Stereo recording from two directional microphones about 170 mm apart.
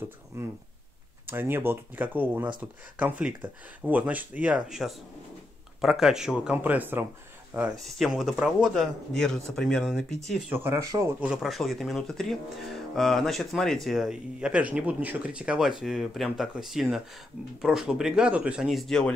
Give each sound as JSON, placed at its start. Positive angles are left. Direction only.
{"t": 0.3, "sound": "speech", "side_deg": -15}
{"t": 7.8, "sound": "speech", "side_deg": 0}
{"t": 10.5, "sound": "speech", "side_deg": -15}